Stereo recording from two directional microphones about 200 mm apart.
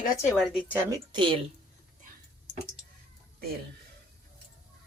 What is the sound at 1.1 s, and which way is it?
Speech, 25° right (ahead or behind).